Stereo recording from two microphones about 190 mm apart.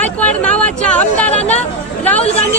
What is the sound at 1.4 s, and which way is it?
Speech, 35° left (ahead or behind).